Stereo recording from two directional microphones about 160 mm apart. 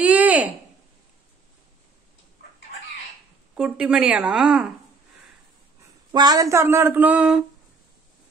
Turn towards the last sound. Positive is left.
turn(degrees=-5)  # may be behind; listen again after turning